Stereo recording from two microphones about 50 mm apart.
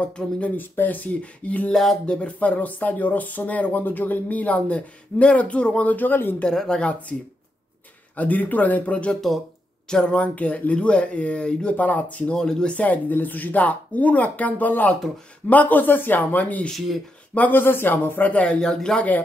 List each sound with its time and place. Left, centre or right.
0.0 s speech: left
0.6 s speech: left
1.7 s speech: centre
2.0 s speech: left
6.4 s speech: centre
8.2 s speech: left
9.8 s speech: centre
12.4 s speech: centre
12.7 s speech: left
16.7 s speech: centre
17.5 s speech: left
18.3 s speech: left
18.6 s speech: centre